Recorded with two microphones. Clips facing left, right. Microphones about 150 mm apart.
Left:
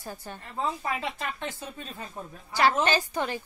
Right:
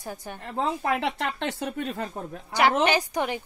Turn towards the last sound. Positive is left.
turn(degrees=-15)  # may be behind; listen again after turning